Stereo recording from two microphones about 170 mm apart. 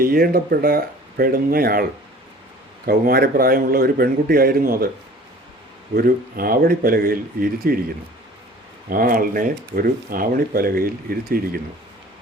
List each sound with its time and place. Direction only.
0.0 s speech: 60° right (ahead or behind)
6.0 s speech: 60° right (ahead or behind)
8.9 s speech: 55° right (ahead or behind)